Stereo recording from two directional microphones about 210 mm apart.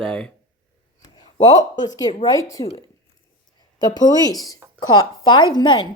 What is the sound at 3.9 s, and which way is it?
Speech, 20° left (ahead or behind).